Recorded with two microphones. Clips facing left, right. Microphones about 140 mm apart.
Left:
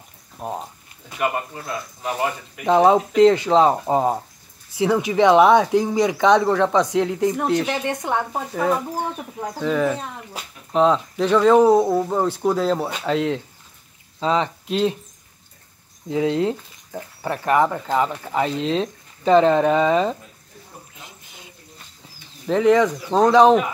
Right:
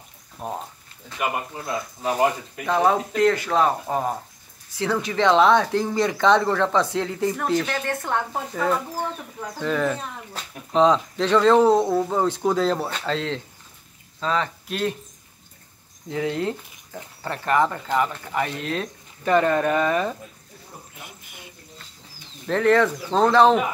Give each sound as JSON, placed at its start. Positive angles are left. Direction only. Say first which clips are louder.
{"t": 0.4, "sound": "speech", "louder": "left 2 dB", "side_deg": 10}
{"t": 2.6, "sound": "speech", "louder": "left 5 dB", "side_deg": 20}
{"t": 16.1, "sound": "speech", "louder": "left 5 dB", "side_deg": 15}
{"t": 21.0, "sound": "a sound", "louder": "right 1 dB", "side_deg": -15}
{"t": 22.5, "sound": "speech", "louder": "left 3 dB", "side_deg": 10}